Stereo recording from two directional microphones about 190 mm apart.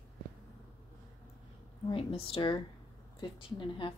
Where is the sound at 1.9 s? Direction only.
30° left (ahead or behind).